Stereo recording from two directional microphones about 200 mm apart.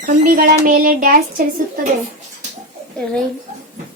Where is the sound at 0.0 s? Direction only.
45° right (ahead or behind).